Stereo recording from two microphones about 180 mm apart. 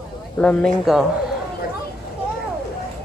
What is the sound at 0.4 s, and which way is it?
Speech, 5° left (ahead or behind).